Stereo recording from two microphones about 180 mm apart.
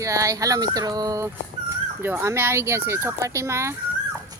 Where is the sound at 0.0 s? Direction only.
20° right (ahead or behind).